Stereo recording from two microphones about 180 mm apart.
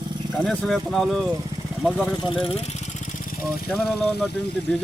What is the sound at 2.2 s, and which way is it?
Speech, 30° left (ahead or behind).